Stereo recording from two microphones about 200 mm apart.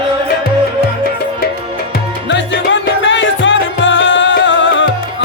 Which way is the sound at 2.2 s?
65° left (ahead or behind).